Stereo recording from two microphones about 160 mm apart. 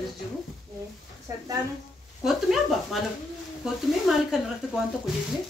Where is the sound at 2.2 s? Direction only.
Centre (ahead or behind).